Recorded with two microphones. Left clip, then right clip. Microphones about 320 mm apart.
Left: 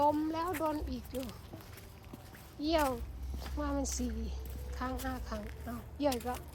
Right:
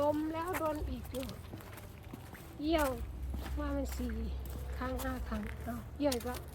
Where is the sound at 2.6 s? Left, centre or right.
Centre.